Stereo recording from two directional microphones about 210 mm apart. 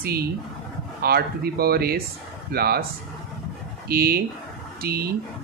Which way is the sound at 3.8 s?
45° right (ahead or behind).